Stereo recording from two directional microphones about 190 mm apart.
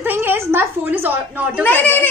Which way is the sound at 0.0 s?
10° right (ahead or behind).